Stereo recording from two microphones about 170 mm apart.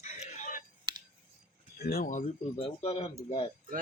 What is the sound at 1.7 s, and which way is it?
Speech, 65° left (ahead or behind).